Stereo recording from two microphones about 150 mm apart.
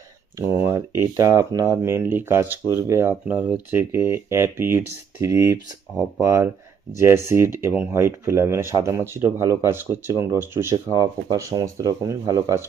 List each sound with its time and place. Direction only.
0.3 s speech: 15° right (ahead or behind)